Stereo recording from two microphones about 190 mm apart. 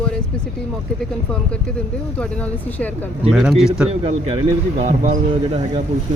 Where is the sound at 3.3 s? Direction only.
Centre (ahead or behind).